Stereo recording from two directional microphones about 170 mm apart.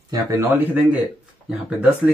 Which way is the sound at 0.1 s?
20° right (ahead or behind).